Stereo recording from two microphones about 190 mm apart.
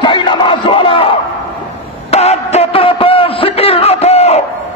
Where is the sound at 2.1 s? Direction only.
35° left (ahead or behind).